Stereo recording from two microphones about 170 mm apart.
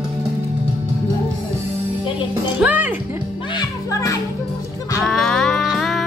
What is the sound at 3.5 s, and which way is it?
Music, 20° left (ahead or behind).